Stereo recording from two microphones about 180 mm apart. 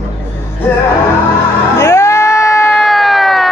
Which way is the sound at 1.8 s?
15° left (ahead or behind).